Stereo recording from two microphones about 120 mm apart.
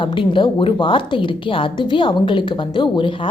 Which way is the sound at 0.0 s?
45° left (ahead or behind).